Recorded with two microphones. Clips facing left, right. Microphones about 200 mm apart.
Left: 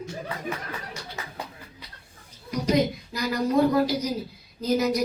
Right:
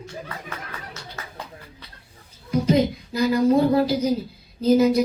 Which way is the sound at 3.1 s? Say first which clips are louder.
Right 5 dB; 30° right (ahead or behind).